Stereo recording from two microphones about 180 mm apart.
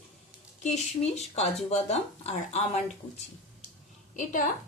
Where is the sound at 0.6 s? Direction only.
40° left (ahead or behind).